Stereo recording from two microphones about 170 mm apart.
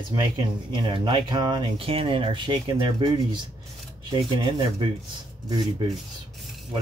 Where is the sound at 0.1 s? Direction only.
25° right (ahead or behind).